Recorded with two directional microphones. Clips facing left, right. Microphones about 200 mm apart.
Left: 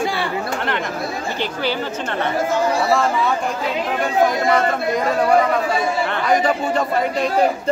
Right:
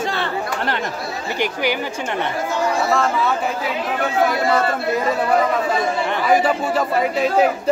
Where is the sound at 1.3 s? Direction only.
15° right (ahead or behind).